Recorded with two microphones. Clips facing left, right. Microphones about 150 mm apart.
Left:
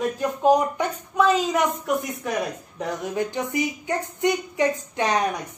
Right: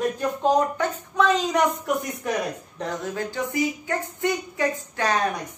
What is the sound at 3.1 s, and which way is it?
A woman's voice, 20° left (ahead or behind).